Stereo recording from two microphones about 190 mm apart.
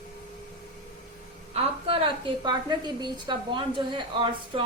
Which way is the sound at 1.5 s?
30° right (ahead or behind).